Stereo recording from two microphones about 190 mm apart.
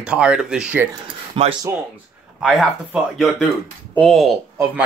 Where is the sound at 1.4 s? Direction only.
30° right (ahead or behind).